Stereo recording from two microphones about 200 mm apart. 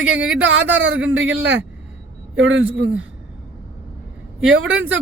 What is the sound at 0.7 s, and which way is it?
Speech, 65° right (ahead or behind).